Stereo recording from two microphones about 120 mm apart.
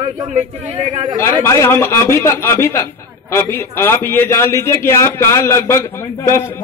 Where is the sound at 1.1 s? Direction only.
25° left (ahead or behind).